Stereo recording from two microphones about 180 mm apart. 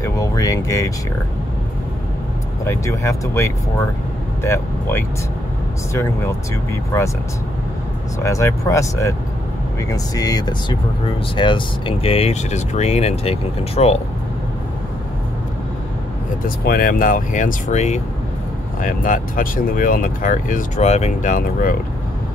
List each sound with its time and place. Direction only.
0.0 s a sound: 20° left (ahead or behind)
2.6 s speech: 15° left (ahead or behind)
8.2 s speech: 15° left (ahead or behind); by 13.9 s 35° left (ahead or behind)
16.4 s speech: 55° left (ahead or behind)